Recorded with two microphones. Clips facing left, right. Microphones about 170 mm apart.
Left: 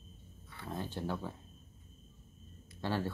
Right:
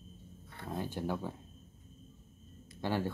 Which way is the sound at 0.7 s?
15° right (ahead or behind).